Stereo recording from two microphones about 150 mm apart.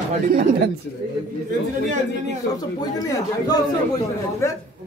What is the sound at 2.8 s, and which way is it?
A man's voice, 25° left (ahead or behind).